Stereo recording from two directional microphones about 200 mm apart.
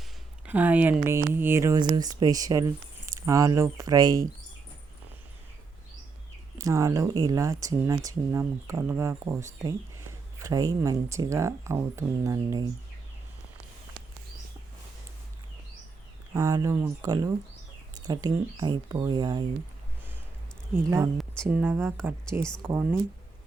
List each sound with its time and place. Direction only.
0.4 s speech: 10° right (ahead or behind)
6.6 s speech: 15° right (ahead or behind)
16.3 s speech: 15° right (ahead or behind)
20.7 s speech: 15° right (ahead or behind)